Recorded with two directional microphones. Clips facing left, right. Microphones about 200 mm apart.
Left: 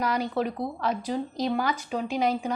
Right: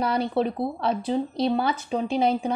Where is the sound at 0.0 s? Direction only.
30° right (ahead or behind).